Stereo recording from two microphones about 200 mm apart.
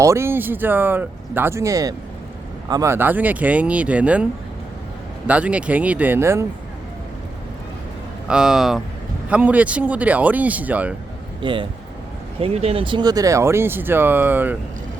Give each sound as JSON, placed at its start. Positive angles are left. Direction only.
{"t": 0.0, "sound": "speech", "side_deg": -15}
{"t": 8.3, "sound": "speech", "side_deg": -5}
{"t": 11.4, "sound": "speech", "side_deg": -25}